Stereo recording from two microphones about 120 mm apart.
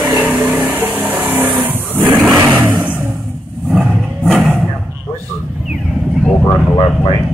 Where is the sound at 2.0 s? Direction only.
35° right (ahead or behind).